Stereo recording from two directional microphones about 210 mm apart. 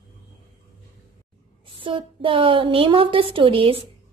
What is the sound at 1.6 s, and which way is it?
A woman's voice, 25° right (ahead or behind).